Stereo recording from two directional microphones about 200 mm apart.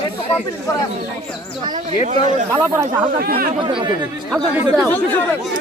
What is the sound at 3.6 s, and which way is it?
Speech, 25° right (ahead or behind).